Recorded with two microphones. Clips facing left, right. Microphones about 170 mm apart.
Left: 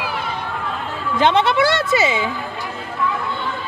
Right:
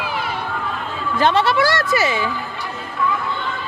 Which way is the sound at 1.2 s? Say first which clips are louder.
Left 1 dB; 20° left (ahead or behind).